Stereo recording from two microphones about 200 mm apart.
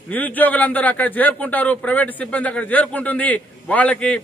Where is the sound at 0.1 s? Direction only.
10° left (ahead or behind).